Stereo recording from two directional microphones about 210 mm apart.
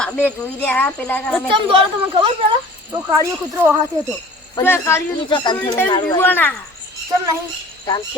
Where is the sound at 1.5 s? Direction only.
25° right (ahead or behind).